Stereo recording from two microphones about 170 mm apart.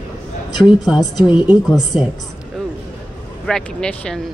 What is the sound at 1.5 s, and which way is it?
Speech, 5° right (ahead or behind).